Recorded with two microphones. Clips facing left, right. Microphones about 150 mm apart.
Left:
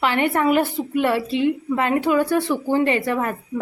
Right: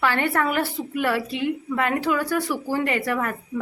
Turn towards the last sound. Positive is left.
turn(degrees=25)  # may be behind; listen again after turning